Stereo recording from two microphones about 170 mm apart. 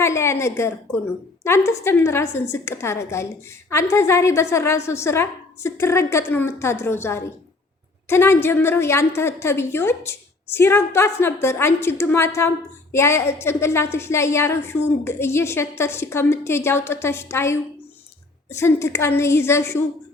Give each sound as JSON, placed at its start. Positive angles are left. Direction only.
{"t": 0.0, "sound": "a woman's voice", "side_deg": 15}